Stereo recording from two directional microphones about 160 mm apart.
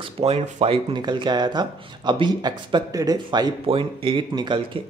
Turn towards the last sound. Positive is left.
turn(degrees=-30)  # may be behind; listen again after turning